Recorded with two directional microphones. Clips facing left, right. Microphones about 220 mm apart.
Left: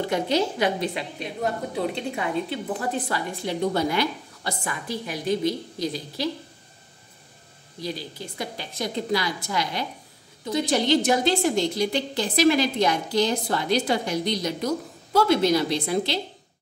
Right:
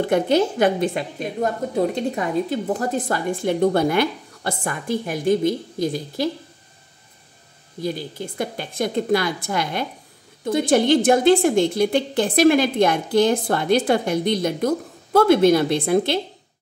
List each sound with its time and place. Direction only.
0.0 s a woman's voice: 50° right (ahead or behind)
7.8 s a woman's voice: 50° right (ahead or behind)